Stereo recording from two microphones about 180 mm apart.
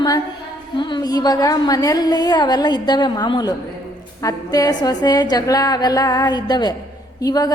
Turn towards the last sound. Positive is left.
turn(degrees=20)  # may be behind; listen again after turning